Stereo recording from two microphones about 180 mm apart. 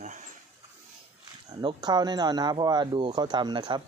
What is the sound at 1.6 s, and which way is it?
Speech, 25° right (ahead or behind).